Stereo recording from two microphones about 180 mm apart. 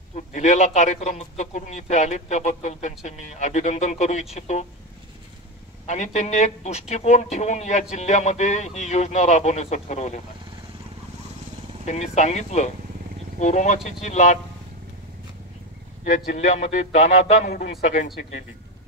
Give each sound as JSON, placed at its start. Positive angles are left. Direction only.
{"t": 0.1, "sound": "speech", "side_deg": 40}
{"t": 5.9, "sound": "speech", "side_deg": 40}
{"t": 11.8, "sound": "speech", "side_deg": 40}
{"t": 16.3, "sound": "speech", "side_deg": 40}